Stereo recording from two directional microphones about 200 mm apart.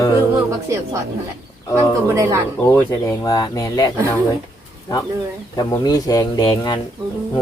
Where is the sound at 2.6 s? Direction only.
10° left (ahead or behind).